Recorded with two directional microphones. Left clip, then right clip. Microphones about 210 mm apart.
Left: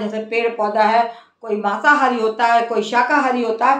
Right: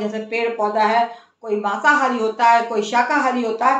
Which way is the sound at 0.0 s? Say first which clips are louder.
Left 2 dB; 20° left (ahead or behind).